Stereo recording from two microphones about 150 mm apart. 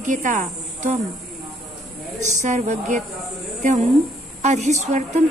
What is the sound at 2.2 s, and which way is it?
A woman's voice, 50° right (ahead or behind).